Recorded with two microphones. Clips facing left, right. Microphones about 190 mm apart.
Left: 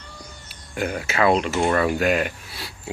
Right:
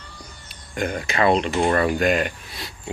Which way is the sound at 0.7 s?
5° left (ahead or behind).